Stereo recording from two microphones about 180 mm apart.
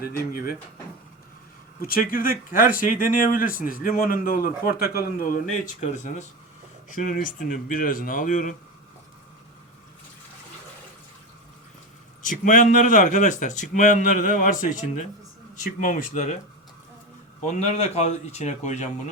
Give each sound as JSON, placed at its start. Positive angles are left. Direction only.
{"t": 0.0, "sound": "speech", "side_deg": 55}
{"t": 1.8, "sound": "speech", "side_deg": 50}
{"t": 6.9, "sound": "speech", "side_deg": 45}
{"t": 12.2, "sound": "speech", "side_deg": 45}
{"t": 15.8, "sound": "speech", "side_deg": 45}
{"t": 17.4, "sound": "speech", "side_deg": 40}